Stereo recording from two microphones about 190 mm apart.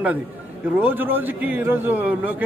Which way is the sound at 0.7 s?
10° right (ahead or behind).